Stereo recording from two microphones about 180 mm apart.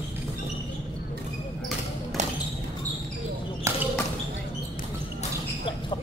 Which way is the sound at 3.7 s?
15° right (ahead or behind).